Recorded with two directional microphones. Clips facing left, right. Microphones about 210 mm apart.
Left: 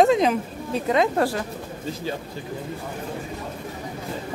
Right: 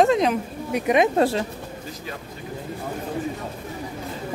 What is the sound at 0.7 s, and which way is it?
Speech, 15° right (ahead or behind).